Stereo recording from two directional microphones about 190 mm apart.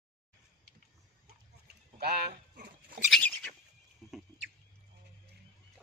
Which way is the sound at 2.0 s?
55° right (ahead or behind).